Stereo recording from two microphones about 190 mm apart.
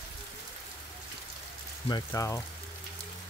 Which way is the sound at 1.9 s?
15° left (ahead or behind).